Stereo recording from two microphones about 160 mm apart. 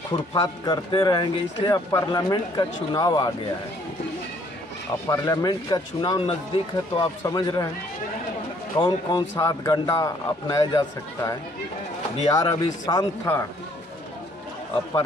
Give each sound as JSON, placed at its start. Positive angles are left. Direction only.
{"t": 0.1, "sound": "speech", "side_deg": 25}
{"t": 5.0, "sound": "speech", "side_deg": 20}
{"t": 8.7, "sound": "speech", "side_deg": 30}
{"t": 9.4, "sound": "speech", "side_deg": 20}